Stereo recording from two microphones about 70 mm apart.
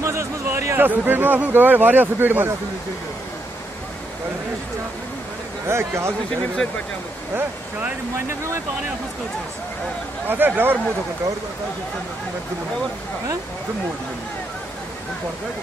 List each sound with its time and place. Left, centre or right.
0.0 s a sound: right
0.7 s speech: right
5.7 s speech: right
7.3 s speech: right
10.2 s speech: right